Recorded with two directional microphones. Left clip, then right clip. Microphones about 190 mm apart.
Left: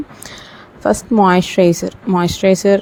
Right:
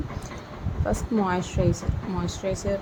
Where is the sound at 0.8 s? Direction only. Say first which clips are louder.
Left 14 dB; 45° left (ahead or behind).